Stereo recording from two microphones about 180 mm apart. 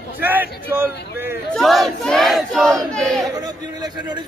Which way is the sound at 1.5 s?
Centre (ahead or behind).